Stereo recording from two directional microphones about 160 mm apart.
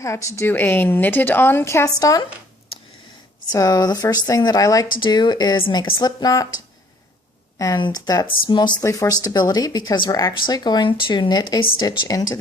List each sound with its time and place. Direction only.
0.0 s a woman's voice: 20° left (ahead or behind)
3.5 s speech: 25° left (ahead or behind)
7.6 s speech: 25° left (ahead or behind)